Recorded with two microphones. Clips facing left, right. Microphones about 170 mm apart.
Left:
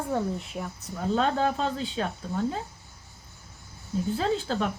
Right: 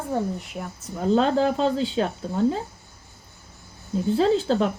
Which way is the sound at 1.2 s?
30° right (ahead or behind).